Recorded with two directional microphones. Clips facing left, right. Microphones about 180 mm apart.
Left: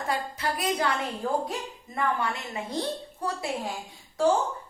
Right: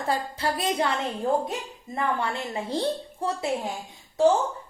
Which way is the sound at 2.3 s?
30° right (ahead or behind).